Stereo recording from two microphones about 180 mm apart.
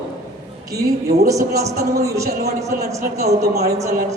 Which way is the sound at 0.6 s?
20° right (ahead or behind).